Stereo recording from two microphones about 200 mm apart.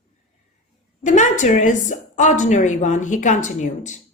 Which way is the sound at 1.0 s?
35° left (ahead or behind).